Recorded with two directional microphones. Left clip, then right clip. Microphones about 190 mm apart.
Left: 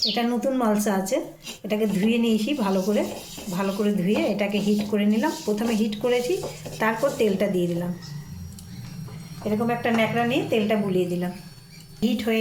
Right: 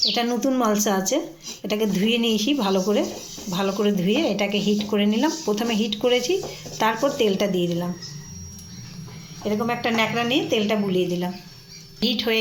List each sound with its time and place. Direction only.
0.1 s a woman's voice: 45° right (ahead or behind)
9.4 s a woman's voice: 45° right (ahead or behind)